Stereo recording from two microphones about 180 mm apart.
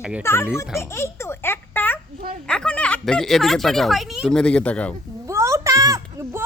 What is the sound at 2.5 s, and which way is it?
Speech, 5° left (ahead or behind).